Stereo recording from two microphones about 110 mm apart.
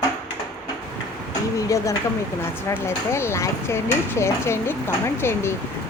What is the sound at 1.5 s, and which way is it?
Speech, 30° left (ahead or behind).